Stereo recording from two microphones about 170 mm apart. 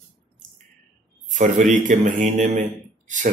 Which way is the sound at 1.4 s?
50° right (ahead or behind).